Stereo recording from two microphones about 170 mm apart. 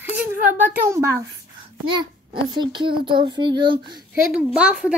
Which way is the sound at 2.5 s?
25° right (ahead or behind).